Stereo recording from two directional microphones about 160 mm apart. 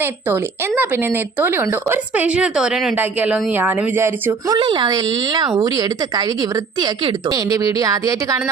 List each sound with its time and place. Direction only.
0.0 s speech: 15° right (ahead or behind)
4.5 s speech: 30° right (ahead or behind)